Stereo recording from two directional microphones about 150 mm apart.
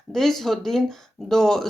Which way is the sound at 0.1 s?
Centre (ahead or behind).